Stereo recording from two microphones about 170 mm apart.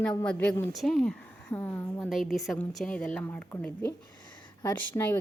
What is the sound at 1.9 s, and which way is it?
A woman's voice, centre (ahead or behind).